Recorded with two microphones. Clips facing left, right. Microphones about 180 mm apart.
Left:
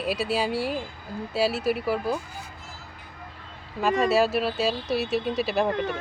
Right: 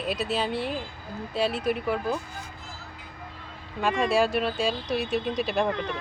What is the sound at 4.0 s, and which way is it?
Speech, 5° left (ahead or behind).